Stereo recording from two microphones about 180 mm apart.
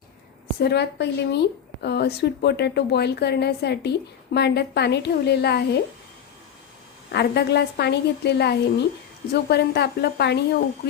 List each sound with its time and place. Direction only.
0.6 s a woman's voice: 65° left (ahead or behind)
7.1 s a woman's voice: 65° left (ahead or behind)